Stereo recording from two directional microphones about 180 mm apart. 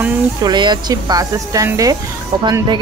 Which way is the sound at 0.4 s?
25° right (ahead or behind).